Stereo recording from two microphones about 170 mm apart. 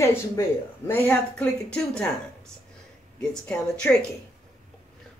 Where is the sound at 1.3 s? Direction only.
5° left (ahead or behind).